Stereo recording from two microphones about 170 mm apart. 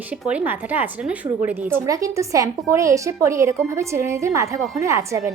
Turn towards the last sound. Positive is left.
turn(degrees=-15)  # may be behind; listen again after turning